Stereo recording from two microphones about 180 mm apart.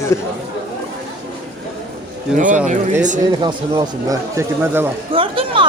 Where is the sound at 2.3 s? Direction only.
45° right (ahead or behind).